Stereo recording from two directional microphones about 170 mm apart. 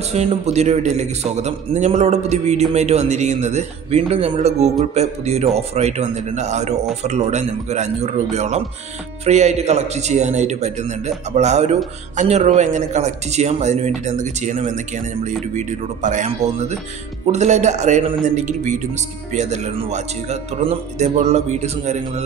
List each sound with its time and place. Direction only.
0.1 s a man's voice: 40° right (ahead or behind)